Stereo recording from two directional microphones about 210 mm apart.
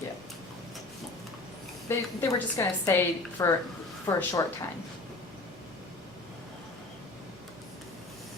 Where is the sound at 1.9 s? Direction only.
15° left (ahead or behind).